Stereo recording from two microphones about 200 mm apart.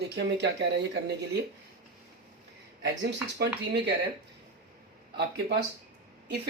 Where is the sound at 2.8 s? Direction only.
60° right (ahead or behind).